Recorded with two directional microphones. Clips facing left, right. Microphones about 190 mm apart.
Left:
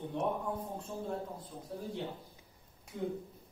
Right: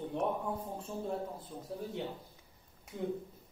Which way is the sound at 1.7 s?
Centre (ahead or behind).